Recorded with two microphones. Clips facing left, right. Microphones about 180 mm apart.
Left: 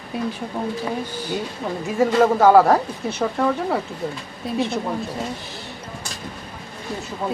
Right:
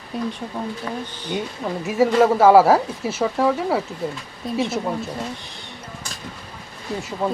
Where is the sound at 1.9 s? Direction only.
5° right (ahead or behind).